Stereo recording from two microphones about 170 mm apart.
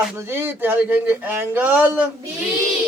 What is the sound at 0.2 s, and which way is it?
A man's voice, 15° right (ahead or behind).